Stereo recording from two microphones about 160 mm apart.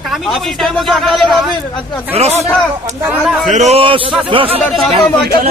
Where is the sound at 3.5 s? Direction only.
45° right (ahead or behind).